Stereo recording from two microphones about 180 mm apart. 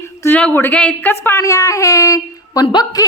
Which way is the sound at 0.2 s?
10° left (ahead or behind).